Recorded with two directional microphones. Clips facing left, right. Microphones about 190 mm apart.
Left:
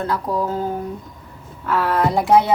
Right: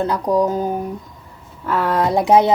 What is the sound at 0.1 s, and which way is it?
Speech, 15° right (ahead or behind).